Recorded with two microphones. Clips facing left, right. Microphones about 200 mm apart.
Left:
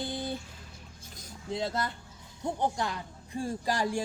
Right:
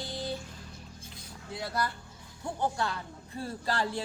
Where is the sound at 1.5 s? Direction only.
20° left (ahead or behind).